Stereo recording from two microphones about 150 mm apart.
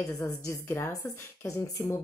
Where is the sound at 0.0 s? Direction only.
20° left (ahead or behind).